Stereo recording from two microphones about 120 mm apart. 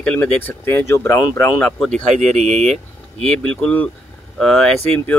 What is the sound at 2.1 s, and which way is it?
Speech, 70° right (ahead or behind).